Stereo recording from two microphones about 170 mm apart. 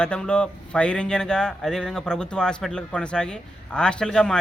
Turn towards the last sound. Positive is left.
turn(degrees=5)  # may be behind; listen again after turning